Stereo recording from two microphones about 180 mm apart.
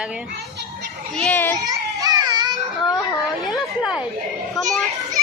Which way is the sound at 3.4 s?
Centre (ahead or behind).